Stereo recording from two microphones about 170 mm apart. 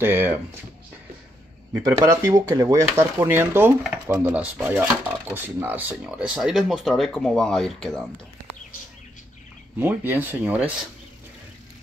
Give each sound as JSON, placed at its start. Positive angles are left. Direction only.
{"t": 0.0, "sound": "speech", "side_deg": -10}
{"t": 1.7, "sound": "speech", "side_deg": -20}
{"t": 9.8, "sound": "speech", "side_deg": -10}